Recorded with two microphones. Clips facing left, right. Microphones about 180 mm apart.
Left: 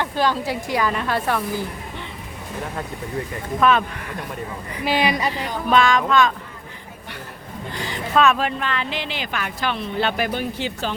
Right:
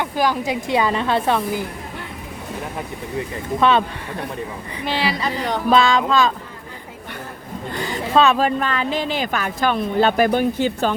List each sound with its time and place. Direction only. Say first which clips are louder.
0.0 s a woman's voice: right 1 dB; 10° right (ahead or behind)
3.6 s a woman's voice: right 1 dB; 30° right (ahead or behind)
4.9 s a man's voice: left 2 dB; 15° left (ahead or behind)
5.7 s speech: even; 30° right (ahead or behind)
8.1 s speech: right 2 dB; 30° right (ahead or behind); by 10.9 s 50° right (ahead or behind)